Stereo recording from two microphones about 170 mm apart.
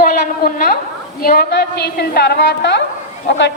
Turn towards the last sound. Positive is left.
turn(degrees=90)